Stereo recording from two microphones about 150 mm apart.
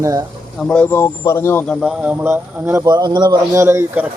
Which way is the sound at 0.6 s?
5° left (ahead or behind).